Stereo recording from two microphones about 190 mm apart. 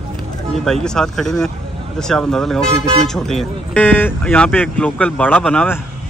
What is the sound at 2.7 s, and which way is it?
Speech, 30° right (ahead or behind).